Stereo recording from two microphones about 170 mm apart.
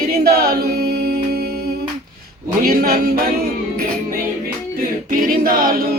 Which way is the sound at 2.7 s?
60° right (ahead or behind).